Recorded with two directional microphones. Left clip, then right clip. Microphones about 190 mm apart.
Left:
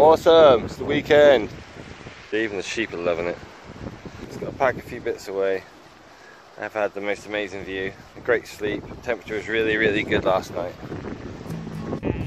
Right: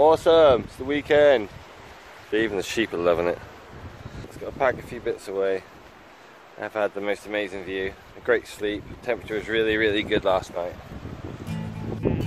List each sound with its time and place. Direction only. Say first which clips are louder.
0.0 s speech: left 3 dB; 30° left (ahead or behind)
2.3 s speech: right 1 dB; 20° right (ahead or behind)
4.6 s speech: left 1 dB; 5° left (ahead or behind)
6.6 s speech: left 1 dB; 5° right (ahead or behind)